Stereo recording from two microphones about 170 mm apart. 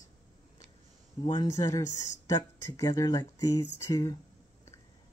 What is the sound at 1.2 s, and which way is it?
Speech, 25° left (ahead or behind).